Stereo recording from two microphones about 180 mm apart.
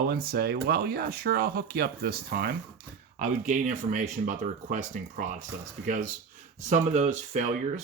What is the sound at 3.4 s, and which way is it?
Speech, 45° right (ahead or behind).